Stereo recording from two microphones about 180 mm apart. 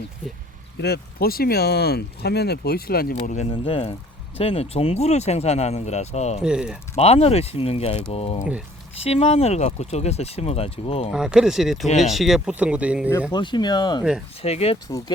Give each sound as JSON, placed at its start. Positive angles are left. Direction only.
{"t": 0.8, "sound": "speech", "side_deg": 60}
{"t": 3.3, "sound": "speech", "side_deg": 30}
{"t": 6.4, "sound": "speech", "side_deg": -5}
{"t": 6.9, "sound": "speech", "side_deg": 35}
{"t": 11.1, "sound": "speech", "side_deg": -5}
{"t": 13.3, "sound": "speech", "side_deg": 25}
{"t": 14.4, "sound": "speech", "side_deg": 35}
{"t": 14.8, "sound": "speech", "side_deg": 20}